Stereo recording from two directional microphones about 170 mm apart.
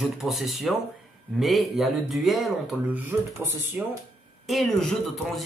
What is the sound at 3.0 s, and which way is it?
Speech, 15° right (ahead or behind).